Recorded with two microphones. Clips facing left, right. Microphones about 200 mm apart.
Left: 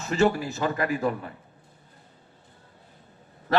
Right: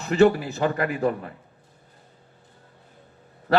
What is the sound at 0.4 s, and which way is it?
Speech, 35° right (ahead or behind).